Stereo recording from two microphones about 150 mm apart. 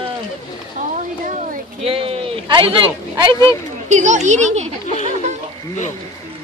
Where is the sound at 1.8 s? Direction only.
40° right (ahead or behind).